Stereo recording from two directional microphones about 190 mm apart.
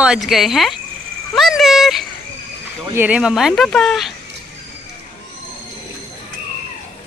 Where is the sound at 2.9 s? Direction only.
5° right (ahead or behind).